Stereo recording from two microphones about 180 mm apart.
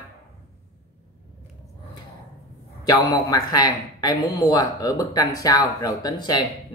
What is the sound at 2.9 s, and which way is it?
A man's voice, 20° left (ahead or behind).